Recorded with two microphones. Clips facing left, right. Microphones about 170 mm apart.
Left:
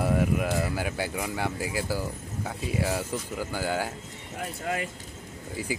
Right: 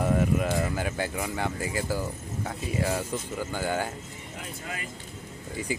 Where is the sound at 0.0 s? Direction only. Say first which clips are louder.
Even; 10° left (ahead or behind).